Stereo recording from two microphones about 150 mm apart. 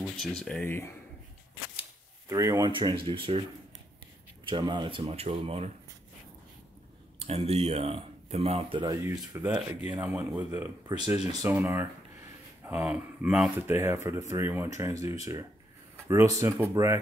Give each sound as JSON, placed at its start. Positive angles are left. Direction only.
{"t": 0.0, "sound": "speech", "side_deg": 5}
{"t": 0.7, "sound": "speech", "side_deg": 15}
{"t": 2.2, "sound": "speech", "side_deg": -20}
{"t": 2.7, "sound": "speech", "side_deg": -30}
{"t": 4.5, "sound": "speech", "side_deg": -30}
{"t": 7.2, "sound": "speech", "side_deg": -45}
{"t": 8.8, "sound": "speech", "side_deg": -20}
{"t": 13.6, "sound": "speech", "side_deg": -15}